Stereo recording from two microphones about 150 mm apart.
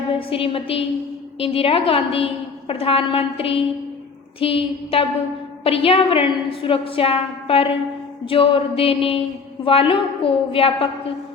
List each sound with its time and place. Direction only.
0.1 s a woman's voice: 35° left (ahead or behind)